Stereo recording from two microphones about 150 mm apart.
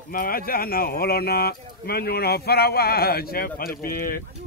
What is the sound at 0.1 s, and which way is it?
Speech, 75° left (ahead or behind).